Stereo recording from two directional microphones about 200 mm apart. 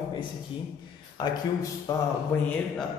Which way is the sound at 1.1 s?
20° left (ahead or behind).